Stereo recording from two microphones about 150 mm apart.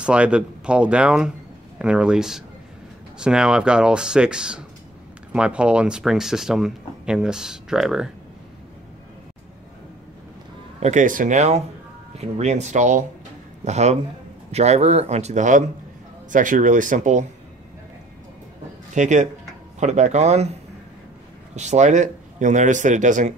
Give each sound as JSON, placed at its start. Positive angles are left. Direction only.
{"t": 0.0, "sound": "speech", "side_deg": -5}
{"t": 10.8, "sound": "a man's voice", "side_deg": -55}
{"t": 18.9, "sound": "a man's voice", "side_deg": -55}
{"t": 21.5, "sound": "a man's voice", "side_deg": -50}